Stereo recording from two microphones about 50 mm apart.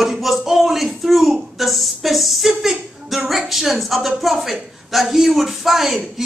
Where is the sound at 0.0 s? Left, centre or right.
Centre.